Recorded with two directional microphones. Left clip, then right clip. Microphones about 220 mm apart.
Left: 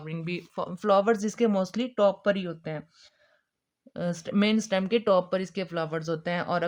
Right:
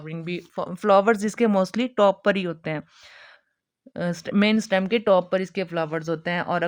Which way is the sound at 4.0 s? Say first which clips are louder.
Right 4 dB; 20° right (ahead or behind).